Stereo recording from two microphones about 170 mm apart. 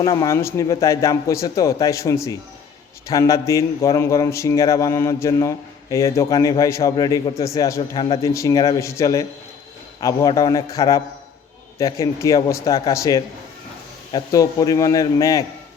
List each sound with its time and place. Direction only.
0.0 s a man's voice: 20° left (ahead or behind)
7.8 s speech: 30° left (ahead or behind)
8.2 s a man's voice: 20° left (ahead or behind)